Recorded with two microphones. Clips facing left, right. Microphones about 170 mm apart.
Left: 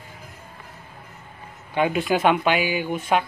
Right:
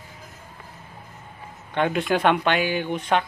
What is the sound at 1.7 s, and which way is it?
Speech, 5° left (ahead or behind).